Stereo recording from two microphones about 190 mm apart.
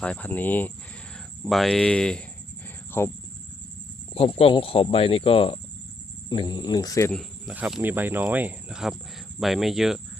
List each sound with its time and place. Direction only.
0.0 s speech: 5° left (ahead or behind)
4.1 s speech: 30° left (ahead or behind)
7.1 s speech: centre (ahead or behind)